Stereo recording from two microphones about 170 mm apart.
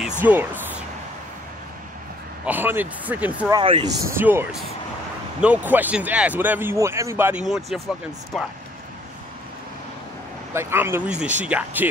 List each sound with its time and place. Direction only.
0.2 s a sound: 10° right (ahead or behind)
2.4 s speech: 10° right (ahead or behind)
3.5 s speech: 30° right (ahead or behind)
4.0 s speech: 15° right (ahead or behind)
7.4 s speech: centre (ahead or behind)
10.5 s speech: 15° right (ahead or behind)